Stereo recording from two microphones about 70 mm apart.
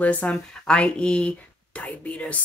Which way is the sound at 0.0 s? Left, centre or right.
Left.